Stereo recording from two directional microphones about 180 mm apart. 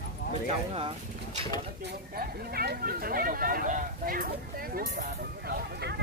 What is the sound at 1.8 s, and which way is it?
Speech, 65° right (ahead or behind).